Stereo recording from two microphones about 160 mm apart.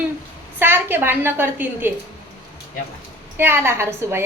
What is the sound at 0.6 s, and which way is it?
A woman's voice, 15° right (ahead or behind).